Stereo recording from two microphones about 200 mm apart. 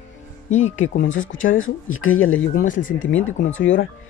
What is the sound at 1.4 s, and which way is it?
Speech, 80° left.